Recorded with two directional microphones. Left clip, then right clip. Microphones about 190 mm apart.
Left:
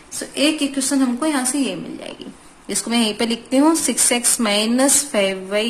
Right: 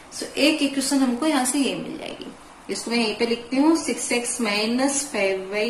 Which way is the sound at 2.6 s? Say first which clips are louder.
Left 3 dB; 55° left (ahead or behind).